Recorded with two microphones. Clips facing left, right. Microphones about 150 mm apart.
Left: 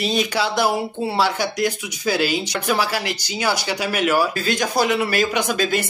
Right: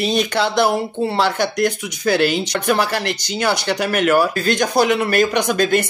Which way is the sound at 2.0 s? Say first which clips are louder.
Right 4 dB; 60° right (ahead or behind).